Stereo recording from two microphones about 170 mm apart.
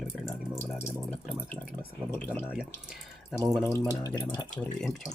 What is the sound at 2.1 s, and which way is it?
Speech, 10° left (ahead or behind).